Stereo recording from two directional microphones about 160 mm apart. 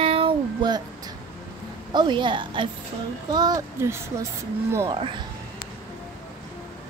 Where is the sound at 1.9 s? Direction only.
30° right (ahead or behind).